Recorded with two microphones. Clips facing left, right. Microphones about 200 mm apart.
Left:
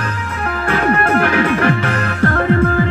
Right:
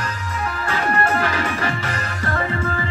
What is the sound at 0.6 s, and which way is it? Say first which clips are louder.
Music: left 6 dB; 60° left (ahead or behind).